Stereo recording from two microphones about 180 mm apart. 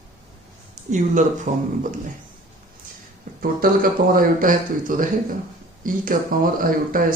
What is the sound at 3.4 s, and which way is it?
Speech, 55° right (ahead or behind).